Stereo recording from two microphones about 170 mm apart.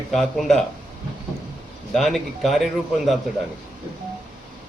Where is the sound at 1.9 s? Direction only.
Centre (ahead or behind).